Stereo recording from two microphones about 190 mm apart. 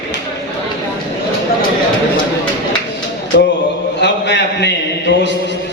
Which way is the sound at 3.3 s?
65° left (ahead or behind).